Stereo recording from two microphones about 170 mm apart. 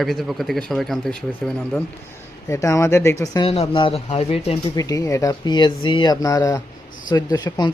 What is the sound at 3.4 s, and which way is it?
Speech, 35° left (ahead or behind).